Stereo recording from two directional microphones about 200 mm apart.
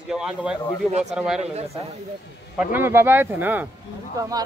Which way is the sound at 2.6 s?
10° right (ahead or behind).